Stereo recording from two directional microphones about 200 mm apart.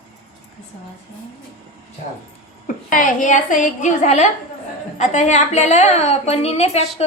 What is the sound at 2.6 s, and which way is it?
A woman's voice, 40° left (ahead or behind).